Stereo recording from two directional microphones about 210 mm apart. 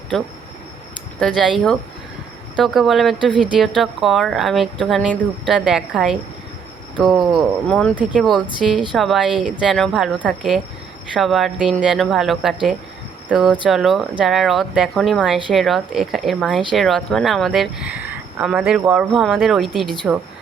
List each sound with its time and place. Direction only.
1.2 s speech: centre (ahead or behind)